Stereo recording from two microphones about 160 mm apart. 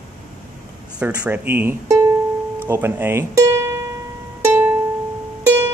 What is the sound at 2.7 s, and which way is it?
Music, 15° right (ahead or behind).